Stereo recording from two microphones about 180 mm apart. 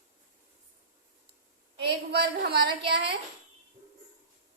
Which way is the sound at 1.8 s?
70° right (ahead or behind).